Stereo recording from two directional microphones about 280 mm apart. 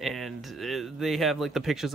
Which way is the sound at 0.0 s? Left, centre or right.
Centre.